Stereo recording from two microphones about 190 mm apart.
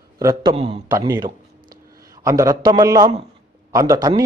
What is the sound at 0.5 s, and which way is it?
Speech, 30° right (ahead or behind).